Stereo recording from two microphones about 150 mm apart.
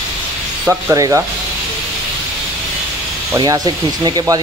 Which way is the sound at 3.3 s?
25° right (ahead or behind).